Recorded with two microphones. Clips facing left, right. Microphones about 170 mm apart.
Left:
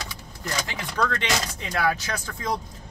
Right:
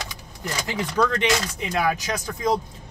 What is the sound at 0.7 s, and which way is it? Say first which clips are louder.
Speech: right 6 dB; 15° right (ahead or behind).